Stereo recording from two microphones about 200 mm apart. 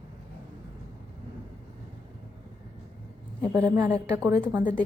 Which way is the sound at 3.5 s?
15° right (ahead or behind).